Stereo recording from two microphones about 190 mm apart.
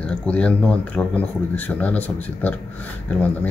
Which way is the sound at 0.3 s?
5° left (ahead or behind).